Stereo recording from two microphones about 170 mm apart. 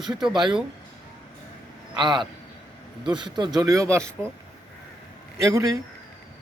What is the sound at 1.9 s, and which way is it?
Speech, 25° right (ahead or behind).